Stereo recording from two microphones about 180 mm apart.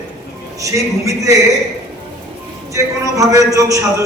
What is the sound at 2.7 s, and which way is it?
A man's voice, 20° right (ahead or behind).